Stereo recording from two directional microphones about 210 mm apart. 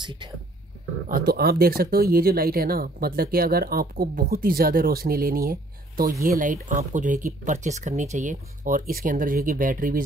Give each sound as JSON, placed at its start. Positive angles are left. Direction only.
{"t": 0.0, "sound": "speech", "side_deg": -20}
{"t": 1.0, "sound": "speech", "side_deg": -45}